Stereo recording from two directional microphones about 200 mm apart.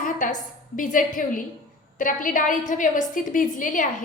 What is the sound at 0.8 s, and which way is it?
A woman's voice, 40° left (ahead or behind).